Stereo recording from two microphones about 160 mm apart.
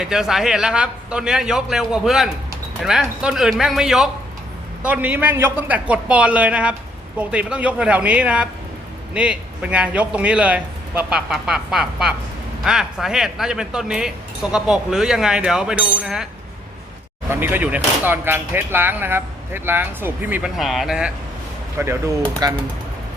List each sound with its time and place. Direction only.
0.0 s a man's voice: 5° right (ahead or behind)
17.2 s speech: 15° right (ahead or behind)
21.8 s speech: 15° right (ahead or behind)